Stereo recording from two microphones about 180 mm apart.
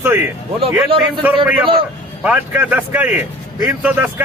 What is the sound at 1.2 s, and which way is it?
A man's voice, 10° right (ahead or behind).